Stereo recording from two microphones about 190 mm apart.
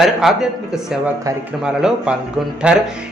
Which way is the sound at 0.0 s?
Centre (ahead or behind).